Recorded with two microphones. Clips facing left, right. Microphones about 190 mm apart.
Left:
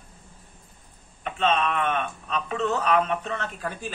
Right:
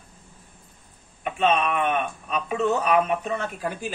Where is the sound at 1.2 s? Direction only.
15° right (ahead or behind).